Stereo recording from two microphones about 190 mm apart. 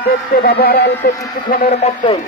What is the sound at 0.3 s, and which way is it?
Speech, 55° left (ahead or behind).